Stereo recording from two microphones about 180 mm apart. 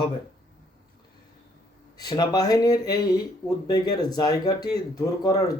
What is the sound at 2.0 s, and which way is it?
Speech, 20° left (ahead or behind).